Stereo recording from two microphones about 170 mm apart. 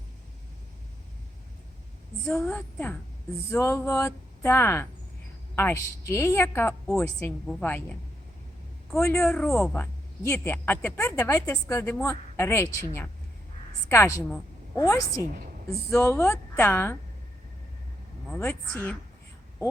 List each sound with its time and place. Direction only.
2.4 s speech: 10° left (ahead or behind)
6.8 s a woman's voice: centre (ahead or behind)
9.0 s speech: 15° left (ahead or behind)
9.3 s a woman's voice: centre (ahead or behind)